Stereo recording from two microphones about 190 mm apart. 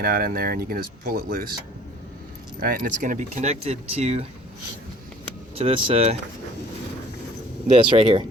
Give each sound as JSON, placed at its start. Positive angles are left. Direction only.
{"t": 0.0, "sound": "speech", "side_deg": -50}
{"t": 2.6, "sound": "speech", "side_deg": -50}
{"t": 5.5, "sound": "speech", "side_deg": -30}
{"t": 7.8, "sound": "speech", "side_deg": -25}